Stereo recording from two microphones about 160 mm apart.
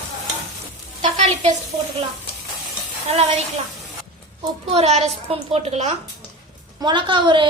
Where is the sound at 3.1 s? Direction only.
45° right (ahead or behind).